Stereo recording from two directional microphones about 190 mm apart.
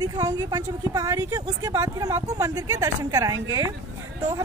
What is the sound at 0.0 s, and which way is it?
A woman's voice, 20° right (ahead or behind).